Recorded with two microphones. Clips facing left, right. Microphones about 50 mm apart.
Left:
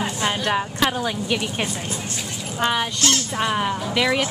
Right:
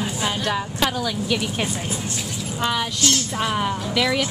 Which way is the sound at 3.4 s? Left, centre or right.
Centre.